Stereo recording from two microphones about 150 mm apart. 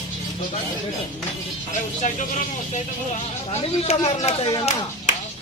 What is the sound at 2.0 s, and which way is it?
Speech, 55° left (ahead or behind).